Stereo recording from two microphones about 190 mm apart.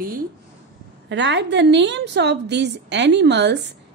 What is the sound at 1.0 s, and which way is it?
A woman's voice, 70° right (ahead or behind).